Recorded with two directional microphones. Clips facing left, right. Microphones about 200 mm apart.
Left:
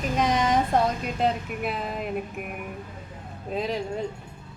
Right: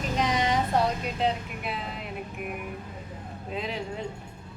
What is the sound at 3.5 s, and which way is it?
Speech, 40° left (ahead or behind).